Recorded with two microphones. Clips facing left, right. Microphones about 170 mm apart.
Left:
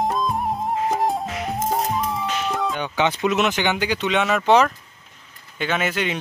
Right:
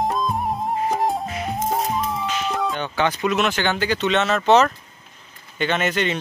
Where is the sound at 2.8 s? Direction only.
15° left (ahead or behind).